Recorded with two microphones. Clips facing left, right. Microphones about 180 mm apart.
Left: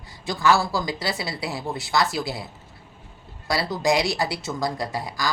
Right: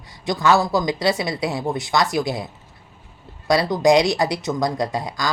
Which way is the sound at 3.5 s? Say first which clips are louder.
Right 7 dB; 20° right (ahead or behind).